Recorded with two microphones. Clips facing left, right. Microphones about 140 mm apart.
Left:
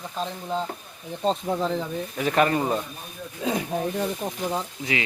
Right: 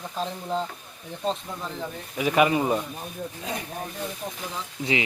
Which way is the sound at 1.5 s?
70° left (ahead or behind).